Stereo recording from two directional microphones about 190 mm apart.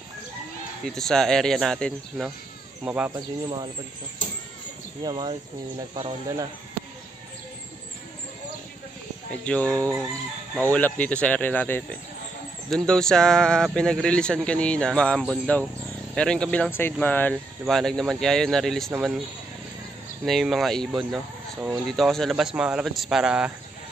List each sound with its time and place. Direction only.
0.8 s speech: 5° left (ahead or behind)
2.8 s speech: 5° right (ahead or behind)
5.0 s speech: 25° right (ahead or behind)
9.3 s speech: 5° left (ahead or behind)
20.2 s speech: centre (ahead or behind)